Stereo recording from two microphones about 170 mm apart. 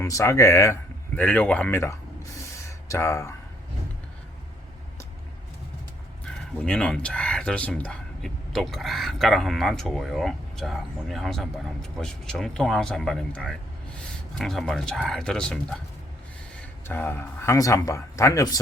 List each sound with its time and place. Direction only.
0.0 s speech: 15° left (ahead or behind)
6.2 s speech: 5° left (ahead or behind)
16.8 s speech: 10° left (ahead or behind)